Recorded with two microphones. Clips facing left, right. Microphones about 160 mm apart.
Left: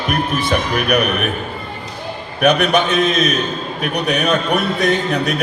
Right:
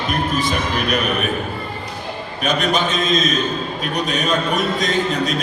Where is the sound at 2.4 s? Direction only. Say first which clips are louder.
Left 5 dB; 60° left (ahead or behind).